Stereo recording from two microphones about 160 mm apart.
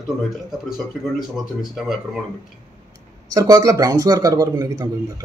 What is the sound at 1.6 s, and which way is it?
Speech, centre (ahead or behind).